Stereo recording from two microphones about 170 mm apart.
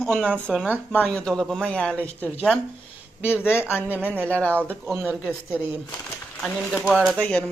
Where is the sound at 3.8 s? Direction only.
10° right (ahead or behind).